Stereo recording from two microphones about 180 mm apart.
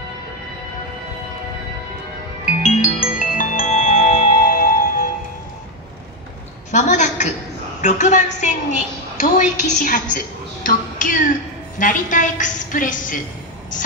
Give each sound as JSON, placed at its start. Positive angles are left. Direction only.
{"t": 2.4, "sound": "music", "side_deg": 45}
{"t": 6.7, "sound": "a sound", "side_deg": 40}
{"t": 7.8, "sound": "a woman's voice", "side_deg": 40}